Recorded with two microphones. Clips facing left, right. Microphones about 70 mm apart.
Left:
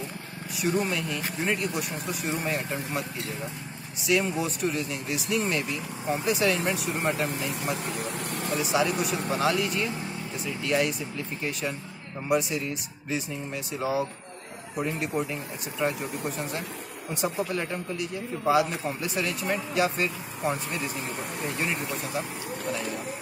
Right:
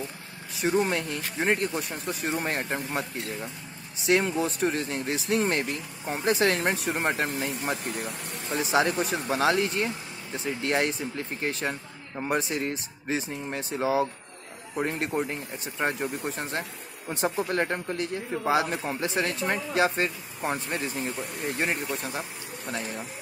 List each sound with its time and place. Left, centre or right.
0.6 s speech: right
4.0 s speech: right
7.8 s speech: left
8.5 s speech: right
17.5 s speech: right
18.5 s speech: right